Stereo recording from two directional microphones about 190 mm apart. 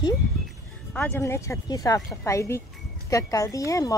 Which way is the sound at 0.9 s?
10° left (ahead or behind).